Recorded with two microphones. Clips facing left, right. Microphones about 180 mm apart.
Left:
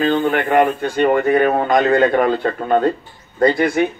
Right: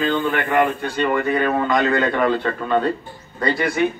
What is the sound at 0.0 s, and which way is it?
A man's voice, 55° left (ahead or behind).